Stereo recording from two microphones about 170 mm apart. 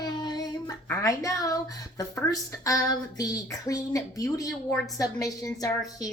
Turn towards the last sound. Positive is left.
turn(degrees=20)  # may be behind; listen again after turning